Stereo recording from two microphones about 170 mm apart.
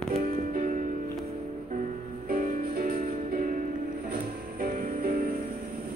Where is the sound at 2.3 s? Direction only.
60° right (ahead or behind).